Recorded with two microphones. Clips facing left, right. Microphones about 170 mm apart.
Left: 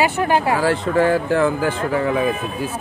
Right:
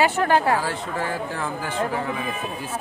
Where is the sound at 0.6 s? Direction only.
80° left.